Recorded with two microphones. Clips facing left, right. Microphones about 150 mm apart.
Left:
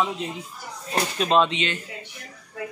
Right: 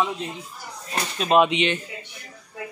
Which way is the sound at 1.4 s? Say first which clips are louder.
Right 3 dB; 20° right (ahead or behind).